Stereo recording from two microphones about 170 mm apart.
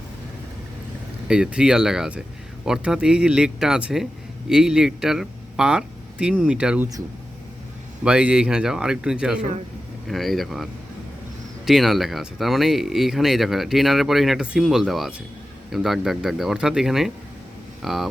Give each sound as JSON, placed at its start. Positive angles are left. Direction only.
{"t": 1.3, "sound": "speech", "side_deg": -5}
{"t": 8.0, "sound": "speech", "side_deg": -5}